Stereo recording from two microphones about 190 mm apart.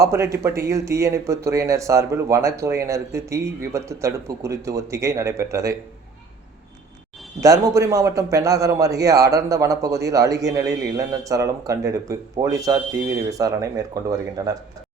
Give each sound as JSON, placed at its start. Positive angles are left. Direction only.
{"t": 0.0, "sound": "a man's voice", "side_deg": -15}
{"t": 7.4, "sound": "a man's voice", "side_deg": -15}